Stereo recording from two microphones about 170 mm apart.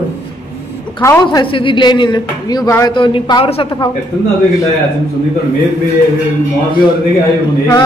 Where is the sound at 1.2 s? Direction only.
25° left (ahead or behind).